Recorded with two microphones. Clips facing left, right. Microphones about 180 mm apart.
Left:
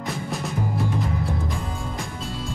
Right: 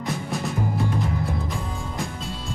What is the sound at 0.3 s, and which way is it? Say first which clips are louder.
Music: right 1 dB; centre (ahead or behind).